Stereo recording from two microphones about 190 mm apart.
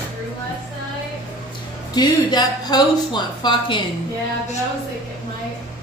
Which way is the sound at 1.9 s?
20° left (ahead or behind).